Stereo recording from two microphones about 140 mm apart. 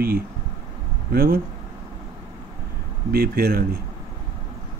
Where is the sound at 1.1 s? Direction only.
90° right.